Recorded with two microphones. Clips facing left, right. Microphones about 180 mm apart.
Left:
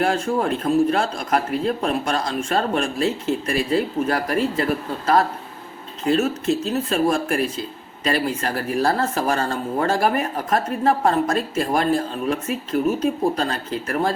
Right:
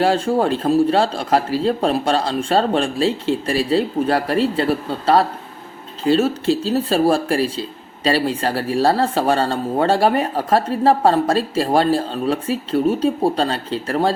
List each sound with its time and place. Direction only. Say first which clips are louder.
0.0 s a man's voice: right 4 dB; 30° right (ahead or behind)